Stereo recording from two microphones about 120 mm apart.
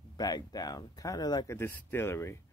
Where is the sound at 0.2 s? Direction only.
35° left (ahead or behind).